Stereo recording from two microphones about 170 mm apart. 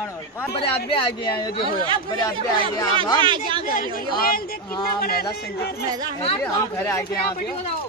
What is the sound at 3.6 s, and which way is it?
A woman's voice, 55° left (ahead or behind).